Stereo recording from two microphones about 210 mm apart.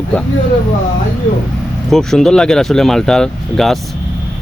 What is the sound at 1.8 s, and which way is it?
Speech, centre (ahead or behind).